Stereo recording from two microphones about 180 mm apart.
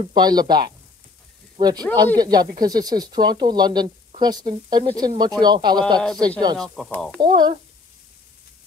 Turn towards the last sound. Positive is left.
turn(degrees=-25)  # may be behind; listen again after turning